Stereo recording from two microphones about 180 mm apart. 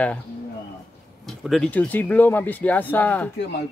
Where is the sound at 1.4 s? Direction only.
Centre (ahead or behind).